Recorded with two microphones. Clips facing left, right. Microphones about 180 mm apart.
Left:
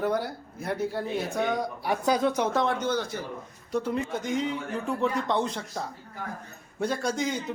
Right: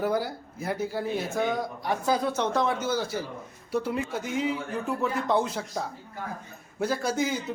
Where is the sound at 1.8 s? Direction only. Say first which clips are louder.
Left 2 dB; 15° left (ahead or behind).